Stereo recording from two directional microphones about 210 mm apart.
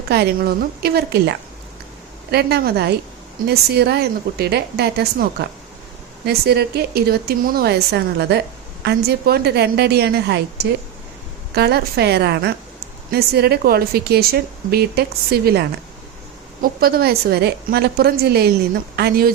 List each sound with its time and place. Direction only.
0.1 s speech: 50° right (ahead or behind)
16.8 s speech: 45° right (ahead or behind)